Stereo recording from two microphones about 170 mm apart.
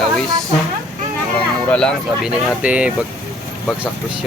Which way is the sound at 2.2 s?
5° right (ahead or behind).